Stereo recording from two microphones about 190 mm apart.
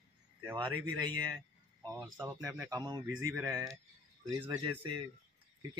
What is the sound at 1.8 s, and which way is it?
Speech, 15° right (ahead or behind).